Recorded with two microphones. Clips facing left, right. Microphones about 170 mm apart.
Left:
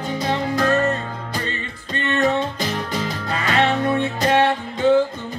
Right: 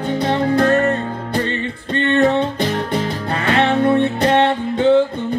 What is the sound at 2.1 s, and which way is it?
Music, 30° right (ahead or behind).